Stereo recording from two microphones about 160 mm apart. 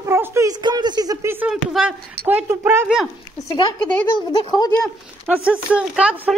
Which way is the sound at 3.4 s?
25° left (ahead or behind).